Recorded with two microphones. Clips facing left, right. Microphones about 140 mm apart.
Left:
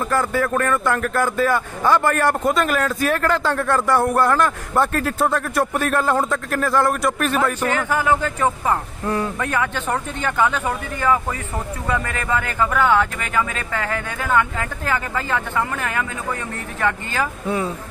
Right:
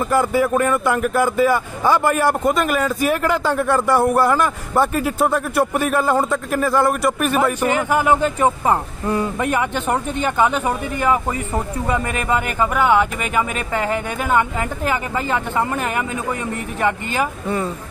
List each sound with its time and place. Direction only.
0.1 s speech: 10° right (ahead or behind)
9.0 s speech: centre (ahead or behind)
9.4 s speech: 20° right (ahead or behind)